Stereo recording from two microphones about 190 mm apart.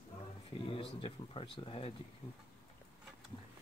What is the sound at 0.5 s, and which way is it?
Speech, 30° left (ahead or behind).